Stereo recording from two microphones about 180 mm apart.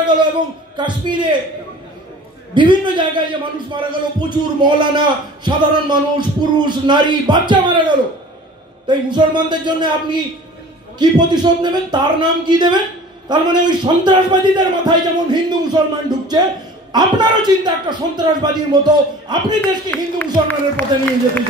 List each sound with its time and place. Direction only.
0.7 s a man's voice: 25° right (ahead or behind)
2.5 s a man's voice: 25° right (ahead or behind)
19.9 s speech: 10° left (ahead or behind)